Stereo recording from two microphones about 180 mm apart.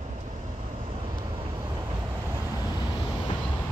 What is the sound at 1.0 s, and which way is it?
Vehicle, 20° right (ahead or behind).